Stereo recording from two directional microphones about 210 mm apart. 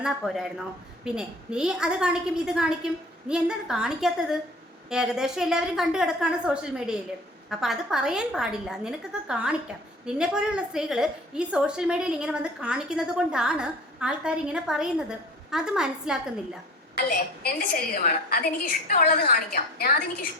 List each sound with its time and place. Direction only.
0.0 s a woman's voice: centre (ahead or behind)
17.1 s a woman's voice: 45° left (ahead or behind)